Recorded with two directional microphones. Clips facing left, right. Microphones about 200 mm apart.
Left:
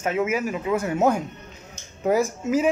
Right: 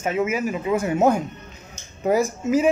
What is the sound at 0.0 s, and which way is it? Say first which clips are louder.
Speech: right 1 dB; 5° right (ahead or behind).